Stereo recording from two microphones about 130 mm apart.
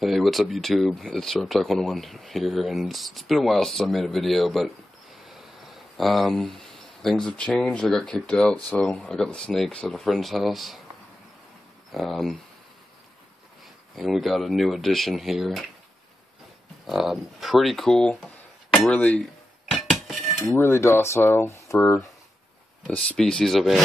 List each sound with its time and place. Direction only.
0.0 s speech: centre (ahead or behind)
11.9 s speech: centre (ahead or behind)
13.9 s speech: centre (ahead or behind)
16.8 s speech: centre (ahead or behind)
19.7 s dishes: centre (ahead or behind)
20.4 s cutlery: 15° left (ahead or behind)
22.8 s speech: 5° left (ahead or behind)